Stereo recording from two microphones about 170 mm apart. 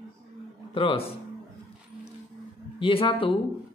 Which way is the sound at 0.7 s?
30° left (ahead or behind).